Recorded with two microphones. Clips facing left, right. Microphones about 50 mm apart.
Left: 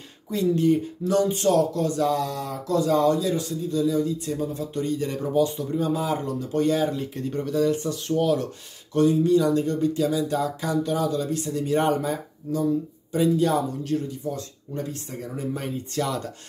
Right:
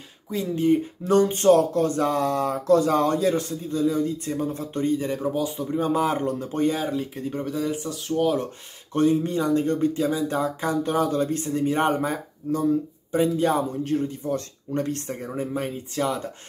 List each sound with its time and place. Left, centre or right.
0.3 s speech: centre
1.0 s speech: right
4.9 s speech: centre
5.8 s speech: right
6.9 s speech: centre
8.2 s speech: centre
8.9 s a man's voice: right
14.3 s speech: right
15.5 s speech: centre